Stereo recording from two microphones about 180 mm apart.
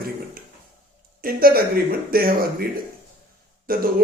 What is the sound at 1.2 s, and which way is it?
Speech, 55° right (ahead or behind).